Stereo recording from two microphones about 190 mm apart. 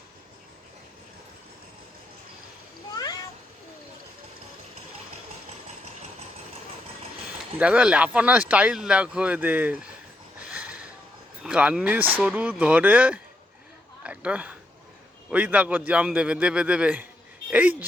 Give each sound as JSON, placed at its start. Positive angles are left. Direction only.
{"t": 2.9, "sound": "cat", "side_deg": 20}
{"t": 5.5, "sound": "engine", "side_deg": -35}
{"t": 7.3, "sound": "speech", "side_deg": -5}
{"t": 10.4, "sound": "a sound", "side_deg": -5}
{"t": 11.4, "sound": "speech", "side_deg": -5}
{"t": 14.0, "sound": "a sound", "side_deg": -5}
{"t": 15.3, "sound": "a man's voice", "side_deg": -10}